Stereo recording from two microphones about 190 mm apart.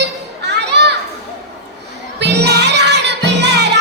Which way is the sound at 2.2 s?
60° right (ahead or behind).